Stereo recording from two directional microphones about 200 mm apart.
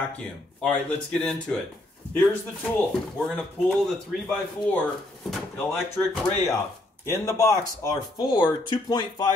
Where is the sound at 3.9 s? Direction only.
Centre (ahead or behind).